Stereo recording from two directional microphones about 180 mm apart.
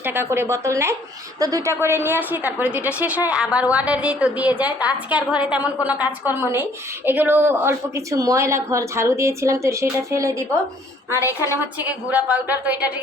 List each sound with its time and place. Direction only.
0.0 s a woman's voice: 10° right (ahead or behind)